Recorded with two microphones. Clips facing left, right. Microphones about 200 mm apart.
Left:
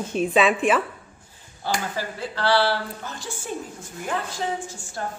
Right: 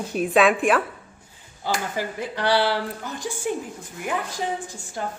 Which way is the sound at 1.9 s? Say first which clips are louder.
Right 2 dB; 15° right (ahead or behind).